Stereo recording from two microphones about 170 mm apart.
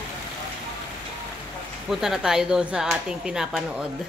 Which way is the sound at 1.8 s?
Centre (ahead or behind).